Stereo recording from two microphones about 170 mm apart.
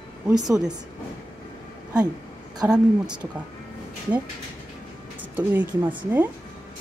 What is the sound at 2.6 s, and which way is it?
Speech, 25° right (ahead or behind).